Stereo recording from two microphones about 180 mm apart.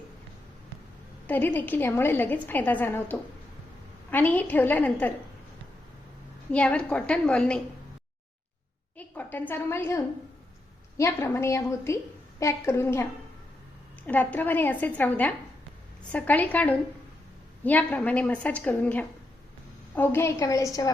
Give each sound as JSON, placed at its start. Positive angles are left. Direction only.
{"t": 1.3, "sound": "a woman's voice", "side_deg": 10}
{"t": 6.5, "sound": "a woman's voice", "side_deg": 5}
{"t": 9.0, "sound": "a woman's voice", "side_deg": 10}
{"t": 14.1, "sound": "a woman's voice", "side_deg": 10}